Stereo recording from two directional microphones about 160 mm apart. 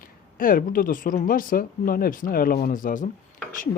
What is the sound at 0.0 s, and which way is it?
Speech, 60° left (ahead or behind).